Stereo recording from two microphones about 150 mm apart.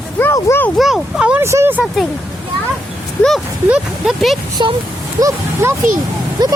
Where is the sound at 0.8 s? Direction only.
Centre (ahead or behind).